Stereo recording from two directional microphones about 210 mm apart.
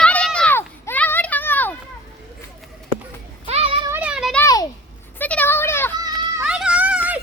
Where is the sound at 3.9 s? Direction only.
5° right (ahead or behind).